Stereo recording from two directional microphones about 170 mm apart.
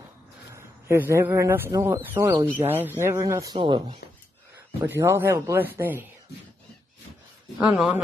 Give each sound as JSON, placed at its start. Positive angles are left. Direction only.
{"t": 0.5, "sound": "a man's voice", "side_deg": -15}
{"t": 4.8, "sound": "speech", "side_deg": -15}
{"t": 7.5, "sound": "speech", "side_deg": -5}